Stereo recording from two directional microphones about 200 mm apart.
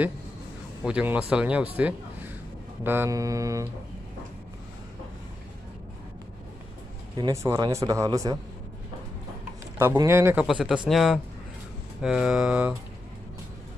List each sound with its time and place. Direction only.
0.8 s speech: 5° right (ahead or behind)
2.8 s speech: 10° right (ahead or behind)
7.2 s speech: 15° right (ahead or behind)
9.8 s speech: 15° right (ahead or behind)
10.4 s speech: 5° right (ahead or behind)